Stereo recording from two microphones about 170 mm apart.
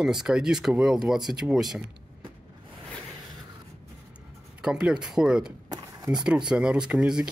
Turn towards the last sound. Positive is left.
turn(degrees=-5)  # may be behind; listen again after turning